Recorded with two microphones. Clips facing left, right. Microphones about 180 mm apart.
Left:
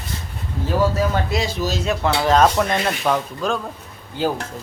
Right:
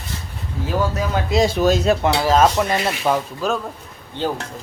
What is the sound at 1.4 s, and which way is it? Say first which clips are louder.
Speech: right 7 dB; 55° right (ahead or behind).